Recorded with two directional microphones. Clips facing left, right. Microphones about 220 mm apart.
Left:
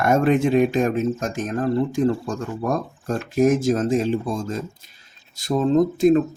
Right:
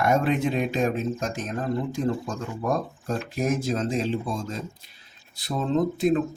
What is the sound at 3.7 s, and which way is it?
Speech, 50° left (ahead or behind).